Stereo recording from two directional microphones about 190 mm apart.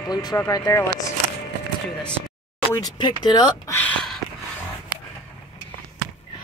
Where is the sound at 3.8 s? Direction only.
5° left (ahead or behind).